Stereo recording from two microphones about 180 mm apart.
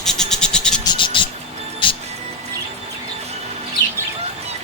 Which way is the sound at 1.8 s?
30° left (ahead or behind).